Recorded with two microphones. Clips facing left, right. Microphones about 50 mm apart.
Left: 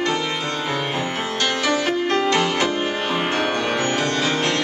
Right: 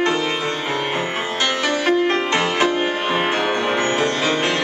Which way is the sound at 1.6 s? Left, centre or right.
Centre.